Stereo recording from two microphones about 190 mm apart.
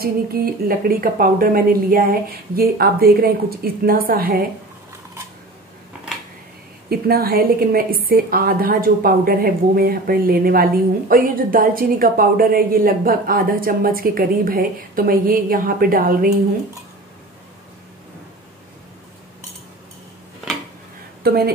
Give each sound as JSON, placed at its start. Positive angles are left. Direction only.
{"t": 0.0, "sound": "speech", "side_deg": -50}
{"t": 6.9, "sound": "speech", "side_deg": -55}
{"t": 21.2, "sound": "a sound", "side_deg": -55}